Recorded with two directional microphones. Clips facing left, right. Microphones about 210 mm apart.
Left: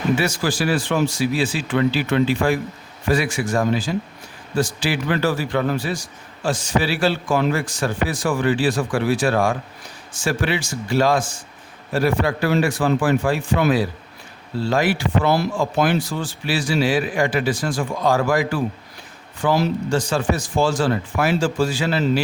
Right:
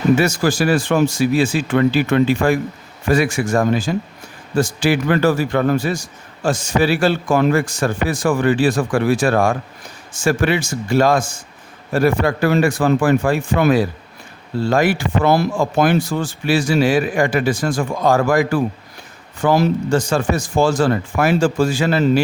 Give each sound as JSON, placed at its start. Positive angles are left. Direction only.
{"t": 0.2, "sound": "a man's voice", "side_deg": -45}